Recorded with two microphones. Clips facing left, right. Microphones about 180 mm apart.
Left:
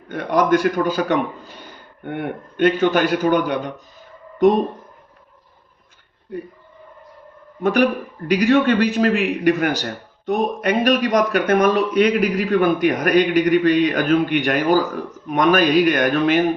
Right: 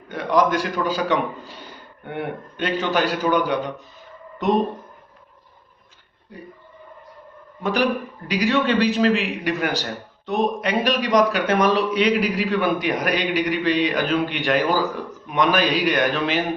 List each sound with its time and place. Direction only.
0.1 s speech: 50° left (ahead or behind)
7.6 s speech: 55° left (ahead or behind)